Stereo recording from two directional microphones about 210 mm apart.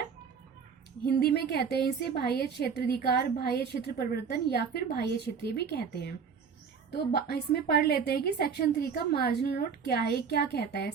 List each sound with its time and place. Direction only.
1.0 s a woman's voice: 50° left (ahead or behind)